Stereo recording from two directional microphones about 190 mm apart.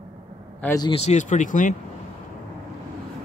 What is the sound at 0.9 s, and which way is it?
Speech, 35° left (ahead or behind).